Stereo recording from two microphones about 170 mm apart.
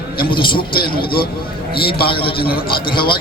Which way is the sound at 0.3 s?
30° left (ahead or behind).